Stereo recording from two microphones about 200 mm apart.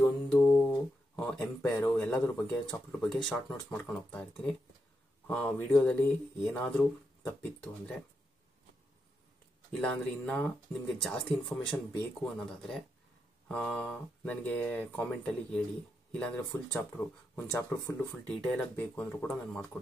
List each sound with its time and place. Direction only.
0.3 s a sound: 5° left (ahead or behind)
1.6 s speech: 10° left (ahead or behind)
9.7 s speech: 5° left (ahead or behind)
11.6 s speech: 20° left (ahead or behind)
12.4 s speech: centre (ahead or behind)
18.3 s speech: 5° left (ahead or behind)